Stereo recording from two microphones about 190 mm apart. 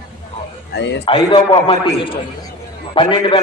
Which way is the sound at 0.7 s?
65° left (ahead or behind).